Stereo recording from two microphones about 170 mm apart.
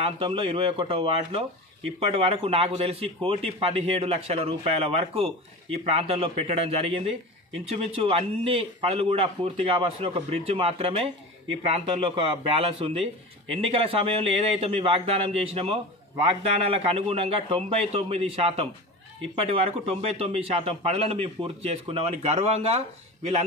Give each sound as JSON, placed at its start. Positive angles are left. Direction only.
{"t": 0.0, "sound": "a man's voice", "side_deg": -30}